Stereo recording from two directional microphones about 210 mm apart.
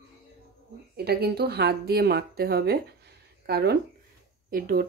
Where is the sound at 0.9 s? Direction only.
50° right (ahead or behind).